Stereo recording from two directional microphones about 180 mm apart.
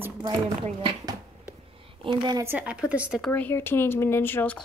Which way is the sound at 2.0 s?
25° right (ahead or behind).